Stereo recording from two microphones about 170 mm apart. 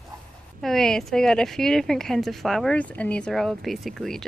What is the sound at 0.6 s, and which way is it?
A woman's voice, centre (ahead or behind).